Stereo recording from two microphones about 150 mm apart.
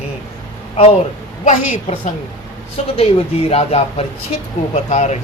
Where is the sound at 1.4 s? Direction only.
55° left (ahead or behind).